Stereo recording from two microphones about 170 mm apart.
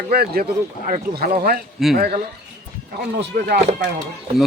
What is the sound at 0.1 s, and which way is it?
Speech, 65° right (ahead or behind).